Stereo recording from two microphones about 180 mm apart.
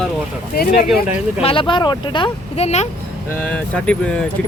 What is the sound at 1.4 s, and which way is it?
Speech, 30° left (ahead or behind).